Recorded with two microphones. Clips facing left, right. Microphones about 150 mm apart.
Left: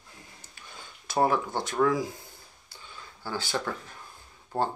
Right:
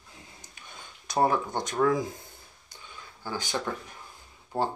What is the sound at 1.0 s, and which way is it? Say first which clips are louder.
Speech: even; 20° right (ahead or behind).